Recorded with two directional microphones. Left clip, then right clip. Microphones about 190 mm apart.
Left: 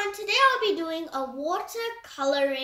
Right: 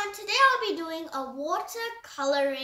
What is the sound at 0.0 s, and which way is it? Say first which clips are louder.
A child's voice: left 1 dB; 20° right (ahead or behind).